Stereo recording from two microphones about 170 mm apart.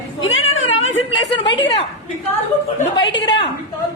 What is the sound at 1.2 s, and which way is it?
Speech, 90° left.